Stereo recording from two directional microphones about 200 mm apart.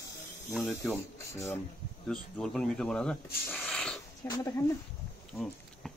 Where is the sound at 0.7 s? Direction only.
15° left (ahead or behind).